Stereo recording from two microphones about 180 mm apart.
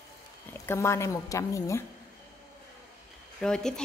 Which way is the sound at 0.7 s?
15° left (ahead or behind).